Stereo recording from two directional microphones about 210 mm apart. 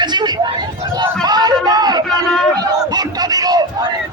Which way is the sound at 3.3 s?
20° right (ahead or behind).